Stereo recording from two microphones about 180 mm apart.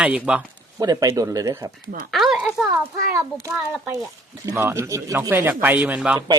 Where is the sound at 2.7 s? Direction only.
15° right (ahead or behind).